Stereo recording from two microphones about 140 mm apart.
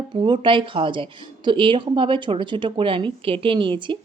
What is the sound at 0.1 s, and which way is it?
A woman's voice, 35° right (ahead or behind).